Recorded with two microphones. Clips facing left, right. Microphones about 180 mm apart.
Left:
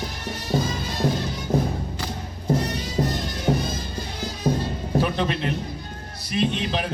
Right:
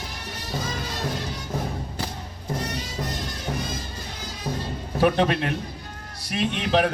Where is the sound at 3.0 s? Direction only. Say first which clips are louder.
Left 10 dB; 30° left (ahead or behind).